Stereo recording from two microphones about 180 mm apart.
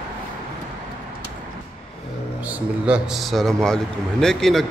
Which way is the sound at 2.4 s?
5° right (ahead or behind).